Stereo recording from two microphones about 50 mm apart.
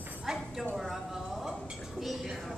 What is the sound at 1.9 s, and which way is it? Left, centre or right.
Speech, centre.